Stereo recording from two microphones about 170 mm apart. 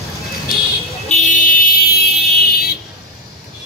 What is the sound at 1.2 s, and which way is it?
Vehicle, 50° left (ahead or behind).